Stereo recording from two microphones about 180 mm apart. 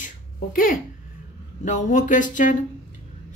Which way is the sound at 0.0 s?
50° left (ahead or behind).